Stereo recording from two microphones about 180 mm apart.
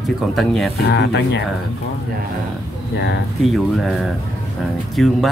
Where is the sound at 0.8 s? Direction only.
70° left (ahead or behind).